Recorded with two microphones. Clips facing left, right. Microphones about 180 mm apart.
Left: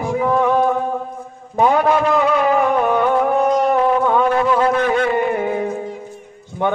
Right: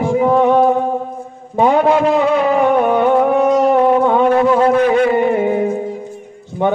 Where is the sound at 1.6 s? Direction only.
25° right (ahead or behind).